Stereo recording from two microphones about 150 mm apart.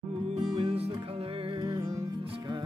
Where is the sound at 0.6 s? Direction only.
40° right (ahead or behind).